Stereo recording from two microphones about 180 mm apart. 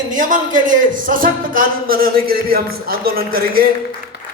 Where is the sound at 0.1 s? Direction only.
45° right (ahead or behind).